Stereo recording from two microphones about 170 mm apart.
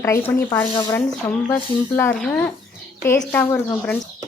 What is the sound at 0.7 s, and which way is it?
Speech, 30° left (ahead or behind).